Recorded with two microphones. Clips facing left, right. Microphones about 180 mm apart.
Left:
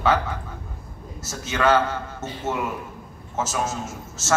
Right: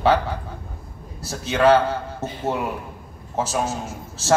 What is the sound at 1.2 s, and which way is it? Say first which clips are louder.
A man's voice: right 5 dB; 35° right (ahead or behind).